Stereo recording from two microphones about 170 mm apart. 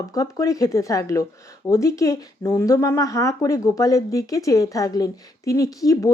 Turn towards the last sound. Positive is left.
turn(degrees=20)  # may be behind; listen again after turning